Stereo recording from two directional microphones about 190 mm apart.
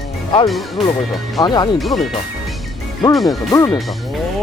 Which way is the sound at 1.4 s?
20° left (ahead or behind).